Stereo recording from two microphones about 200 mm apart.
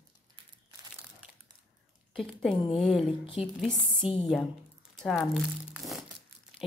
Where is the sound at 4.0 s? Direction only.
25° left (ahead or behind).